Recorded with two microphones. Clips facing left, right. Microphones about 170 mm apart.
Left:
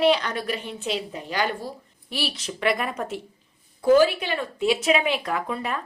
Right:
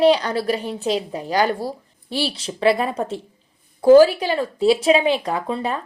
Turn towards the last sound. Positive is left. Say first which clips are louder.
# right 4 dB
turn(degrees=-30)  # may be behind; listen again after turning